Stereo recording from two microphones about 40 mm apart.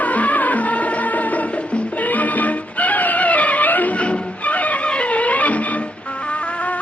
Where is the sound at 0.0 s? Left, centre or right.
Left.